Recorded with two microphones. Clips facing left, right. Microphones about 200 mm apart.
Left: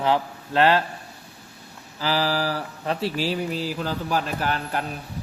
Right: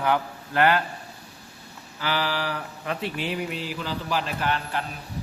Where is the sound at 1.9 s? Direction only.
35° left (ahead or behind).